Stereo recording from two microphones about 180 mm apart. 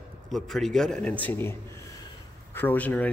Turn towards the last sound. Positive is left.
turn(degrees=10)  # may be behind; listen again after turning